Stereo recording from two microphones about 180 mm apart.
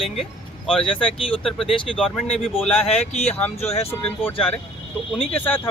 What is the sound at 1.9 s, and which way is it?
Speech, 5° right (ahead or behind).